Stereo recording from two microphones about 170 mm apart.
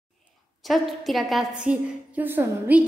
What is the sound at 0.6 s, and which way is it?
Speech, centre (ahead or behind).